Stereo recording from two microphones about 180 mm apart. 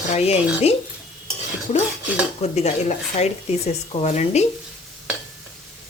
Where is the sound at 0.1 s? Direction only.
35° left (ahead or behind).